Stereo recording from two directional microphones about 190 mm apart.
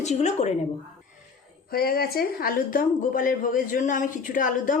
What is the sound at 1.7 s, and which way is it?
Speech, 55° left (ahead or behind).